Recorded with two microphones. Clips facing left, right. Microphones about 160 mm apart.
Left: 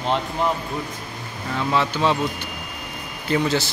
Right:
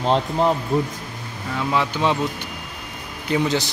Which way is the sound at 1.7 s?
15° right (ahead or behind).